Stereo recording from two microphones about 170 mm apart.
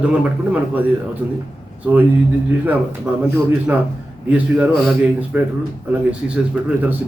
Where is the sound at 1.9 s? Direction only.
10° right (ahead or behind).